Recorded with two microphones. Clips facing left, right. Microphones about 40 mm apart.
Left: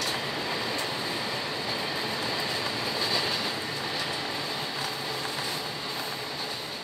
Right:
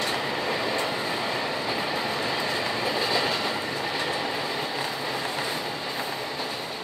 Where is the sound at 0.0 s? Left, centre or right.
Right.